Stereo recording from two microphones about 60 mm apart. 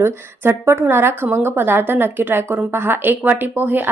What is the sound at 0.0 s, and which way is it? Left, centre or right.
A woman's voice, right.